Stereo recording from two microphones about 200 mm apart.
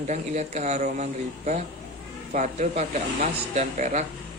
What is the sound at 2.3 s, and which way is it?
Speech, 35° right (ahead or behind).